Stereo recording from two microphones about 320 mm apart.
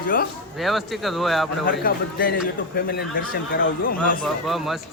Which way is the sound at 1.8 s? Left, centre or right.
Left.